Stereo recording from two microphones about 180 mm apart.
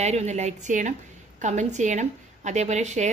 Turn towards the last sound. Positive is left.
turn(degrees=-40)  # may be behind; listen again after turning